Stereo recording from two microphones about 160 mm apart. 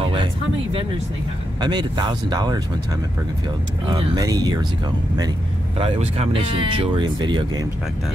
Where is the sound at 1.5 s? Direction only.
25° right (ahead or behind).